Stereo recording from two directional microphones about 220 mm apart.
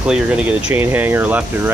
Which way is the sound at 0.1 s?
5° right (ahead or behind).